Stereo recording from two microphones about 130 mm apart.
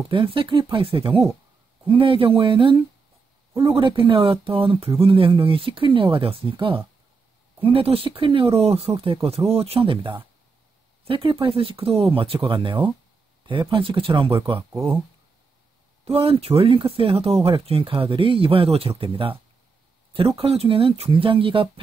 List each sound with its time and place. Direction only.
0.1 s speech: 40° right (ahead or behind)
16.1 s speech: 45° right (ahead or behind)